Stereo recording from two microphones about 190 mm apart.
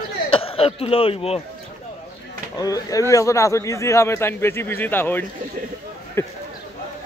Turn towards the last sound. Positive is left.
turn(degrees=15)  # may be behind; listen again after turning